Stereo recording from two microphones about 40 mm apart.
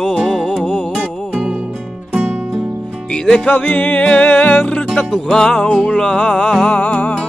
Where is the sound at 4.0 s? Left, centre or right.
Left.